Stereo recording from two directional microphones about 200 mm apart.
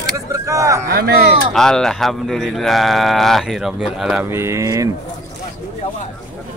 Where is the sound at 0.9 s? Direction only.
50° right (ahead or behind).